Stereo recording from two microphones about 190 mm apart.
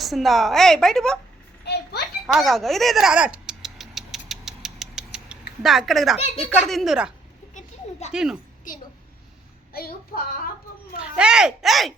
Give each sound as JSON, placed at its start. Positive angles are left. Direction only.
{"t": 0.0, "sound": "a woman's voice", "side_deg": 0}
{"t": 1.6, "sound": "a sound", "side_deg": 60}
{"t": 2.2, "sound": "a sound", "side_deg": 0}
{"t": 5.6, "sound": "a woman's voice", "side_deg": 0}
{"t": 6.1, "sound": "speech", "side_deg": 30}
{"t": 6.5, "sound": "a woman's voice", "side_deg": 0}
{"t": 7.5, "sound": "children playing", "side_deg": 35}
{"t": 8.1, "sound": "a woman's voice", "side_deg": -5}
{"t": 11.0, "sound": "a woman's voice", "side_deg": -5}